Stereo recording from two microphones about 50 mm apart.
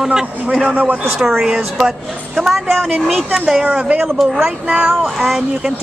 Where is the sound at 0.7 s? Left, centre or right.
Right.